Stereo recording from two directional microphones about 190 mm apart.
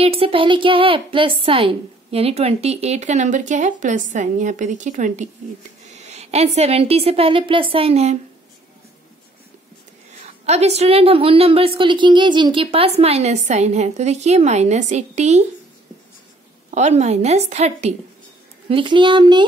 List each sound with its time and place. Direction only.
0.2 s a woman's voice: 25° right (ahead or behind)
10.4 s a woman's voice: 35° right (ahead or behind)
16.7 s a woman's voice: 35° right (ahead or behind)